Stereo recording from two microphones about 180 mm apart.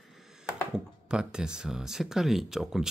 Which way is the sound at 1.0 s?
5° right (ahead or behind).